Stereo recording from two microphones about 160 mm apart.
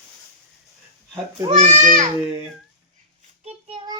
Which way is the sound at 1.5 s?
45° right (ahead or behind).